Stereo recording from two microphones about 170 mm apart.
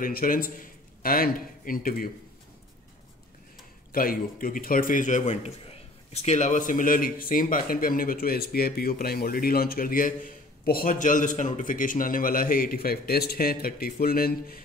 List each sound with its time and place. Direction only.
0.0 s a man's voice: 55° left (ahead or behind)
3.9 s a man's voice: 55° left (ahead or behind)